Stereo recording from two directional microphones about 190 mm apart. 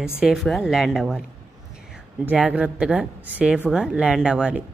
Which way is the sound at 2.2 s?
5° right (ahead or behind).